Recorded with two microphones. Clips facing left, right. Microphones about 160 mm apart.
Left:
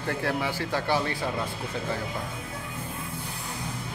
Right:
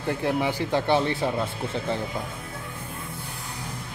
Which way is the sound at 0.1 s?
20° right (ahead or behind).